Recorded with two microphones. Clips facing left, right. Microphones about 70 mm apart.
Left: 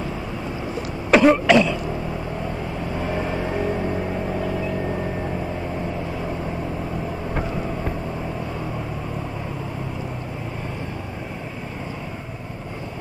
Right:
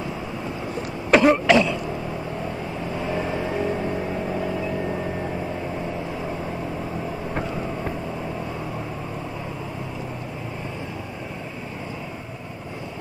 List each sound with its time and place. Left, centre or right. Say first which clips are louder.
1.1 s throat clearing: left 2 dB; centre
2.9 s vehicle: even; centre
3.5 s music: left 2 dB; centre
4.0 s vehicle: left 1 dB; centre